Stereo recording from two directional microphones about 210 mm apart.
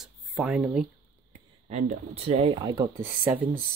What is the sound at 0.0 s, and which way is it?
Speech, centre (ahead or behind).